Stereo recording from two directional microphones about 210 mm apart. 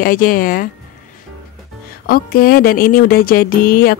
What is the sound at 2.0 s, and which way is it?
Speech, 45° left (ahead or behind).